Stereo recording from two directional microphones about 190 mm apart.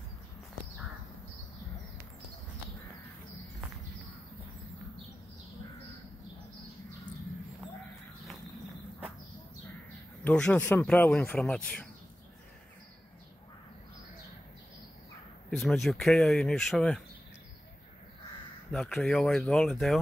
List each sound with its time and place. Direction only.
10.2 s speech: 5° left (ahead or behind)
15.5 s speech: centre (ahead or behind)
18.7 s speech: centre (ahead or behind)